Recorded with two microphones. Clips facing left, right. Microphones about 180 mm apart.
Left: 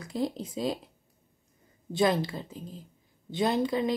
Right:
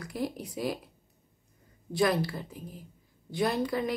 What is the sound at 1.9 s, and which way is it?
A woman's voice, 25° left (ahead or behind).